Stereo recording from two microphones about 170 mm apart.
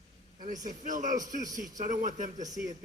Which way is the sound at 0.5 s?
20° right (ahead or behind).